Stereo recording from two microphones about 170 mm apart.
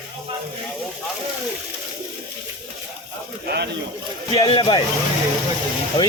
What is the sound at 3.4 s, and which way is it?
Speech, 70° right (ahead or behind).